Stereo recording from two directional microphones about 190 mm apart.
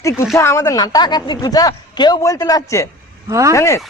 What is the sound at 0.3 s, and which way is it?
Speech, 15° left (ahead or behind).